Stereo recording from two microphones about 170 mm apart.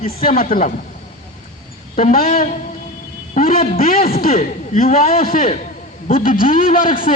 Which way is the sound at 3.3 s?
55° left (ahead or behind).